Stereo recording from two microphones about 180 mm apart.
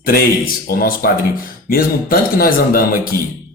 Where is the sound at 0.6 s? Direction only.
55° left (ahead or behind).